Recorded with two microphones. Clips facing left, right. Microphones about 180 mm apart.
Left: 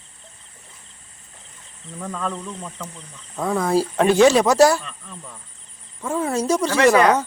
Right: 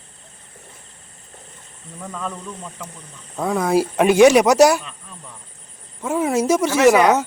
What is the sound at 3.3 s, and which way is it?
Speech, 10° right (ahead or behind).